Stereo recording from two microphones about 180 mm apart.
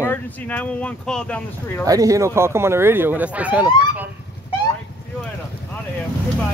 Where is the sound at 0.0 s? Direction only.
10° left (ahead or behind).